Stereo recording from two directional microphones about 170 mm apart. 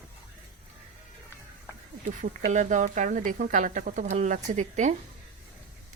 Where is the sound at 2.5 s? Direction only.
45° right (ahead or behind).